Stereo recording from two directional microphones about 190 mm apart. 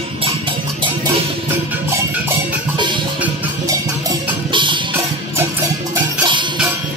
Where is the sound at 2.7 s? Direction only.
25° right (ahead or behind).